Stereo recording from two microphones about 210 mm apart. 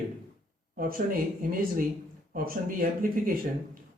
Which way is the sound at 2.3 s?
40° right (ahead or behind).